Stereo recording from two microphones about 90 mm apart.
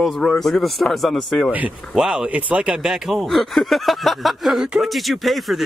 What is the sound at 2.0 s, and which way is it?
Speech, 5° right (ahead or behind).